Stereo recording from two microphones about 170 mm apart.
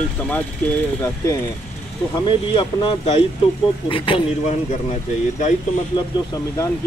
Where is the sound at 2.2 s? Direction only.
30° left (ahead or behind).